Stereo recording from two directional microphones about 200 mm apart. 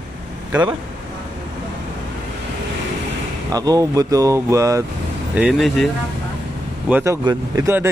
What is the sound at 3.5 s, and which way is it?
Speech, 20° right (ahead or behind).